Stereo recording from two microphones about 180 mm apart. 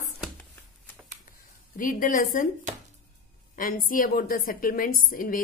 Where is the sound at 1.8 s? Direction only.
45° left (ahead or behind).